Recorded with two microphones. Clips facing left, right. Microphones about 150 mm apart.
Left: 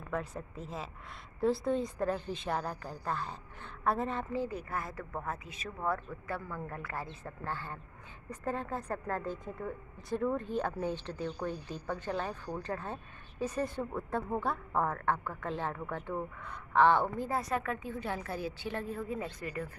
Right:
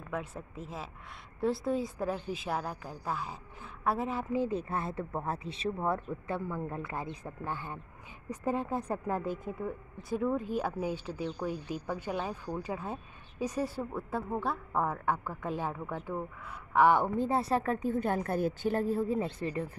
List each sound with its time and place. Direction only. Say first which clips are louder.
0.1 s a woman's voice: left 1 dB; 5° right (ahead or behind)
4.4 s speech: right 4 dB; 25° right (ahead or behind)
17.3 s a woman's voice: right 4 dB; 30° right (ahead or behind)